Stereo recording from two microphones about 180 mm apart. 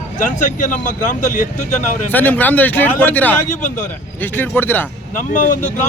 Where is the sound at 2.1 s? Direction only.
10° left (ahead or behind).